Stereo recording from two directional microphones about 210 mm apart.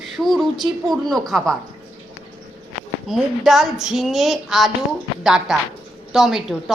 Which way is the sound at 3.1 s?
Centre (ahead or behind).